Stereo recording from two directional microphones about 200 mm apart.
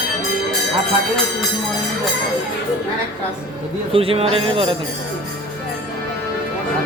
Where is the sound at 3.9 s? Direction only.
30° right (ahead or behind).